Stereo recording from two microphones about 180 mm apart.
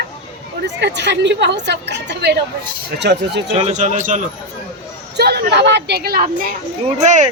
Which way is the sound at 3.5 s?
40° right (ahead or behind).